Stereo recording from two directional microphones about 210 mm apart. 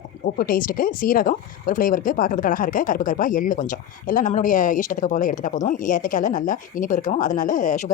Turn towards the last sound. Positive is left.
turn(degrees=35)  # may be behind; listen again after turning